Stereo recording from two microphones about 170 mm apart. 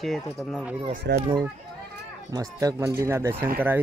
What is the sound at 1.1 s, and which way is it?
Speech, 90° right.